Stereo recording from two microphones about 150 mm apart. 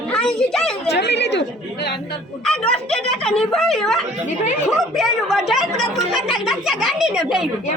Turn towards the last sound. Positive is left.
turn(degrees=-5)  # may be behind; listen again after turning